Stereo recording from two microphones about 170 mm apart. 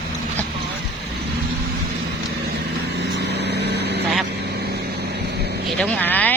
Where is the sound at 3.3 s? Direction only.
80° right.